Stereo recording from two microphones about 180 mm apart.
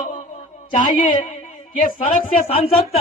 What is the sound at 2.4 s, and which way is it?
Speech, 35° left (ahead or behind).